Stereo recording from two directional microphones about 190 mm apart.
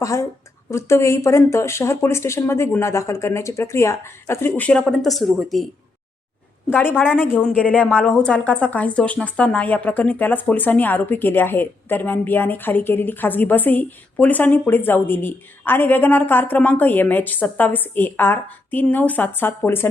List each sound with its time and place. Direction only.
0.0 s a woman's voice: 15° left (ahead or behind); by 5.6 s centre (ahead or behind)
6.7 s a woman's voice: 10° left (ahead or behind)